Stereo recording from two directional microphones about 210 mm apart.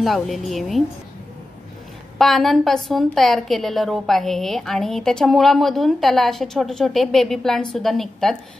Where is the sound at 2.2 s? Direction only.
Centre (ahead or behind).